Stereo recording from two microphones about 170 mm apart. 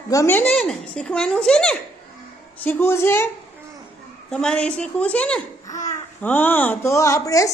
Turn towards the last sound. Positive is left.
turn(degrees=20)  # may be behind; listen again after turning